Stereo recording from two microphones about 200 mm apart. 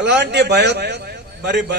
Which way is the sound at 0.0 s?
60° right (ahead or behind).